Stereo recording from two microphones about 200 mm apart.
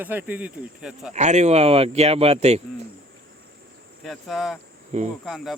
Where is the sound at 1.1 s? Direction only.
35° right (ahead or behind).